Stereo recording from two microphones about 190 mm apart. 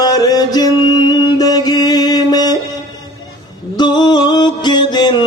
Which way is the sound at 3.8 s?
20° left (ahead or behind).